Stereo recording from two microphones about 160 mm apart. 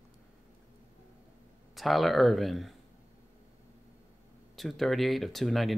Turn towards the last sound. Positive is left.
turn(degrees=0)  # may be behind; listen again after turning